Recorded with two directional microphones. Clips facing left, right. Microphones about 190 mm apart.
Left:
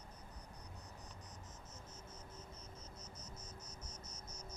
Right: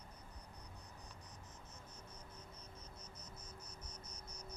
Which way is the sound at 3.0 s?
60° right (ahead or behind).